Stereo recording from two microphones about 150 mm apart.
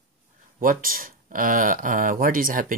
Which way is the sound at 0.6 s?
70° right (ahead or behind).